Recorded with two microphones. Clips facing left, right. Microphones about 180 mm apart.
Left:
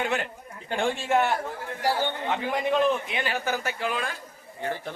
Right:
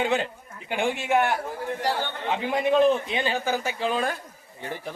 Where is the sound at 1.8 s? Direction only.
10° left (ahead or behind).